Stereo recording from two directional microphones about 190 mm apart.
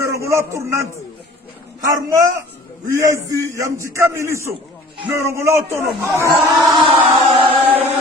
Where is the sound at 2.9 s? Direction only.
15° right (ahead or behind).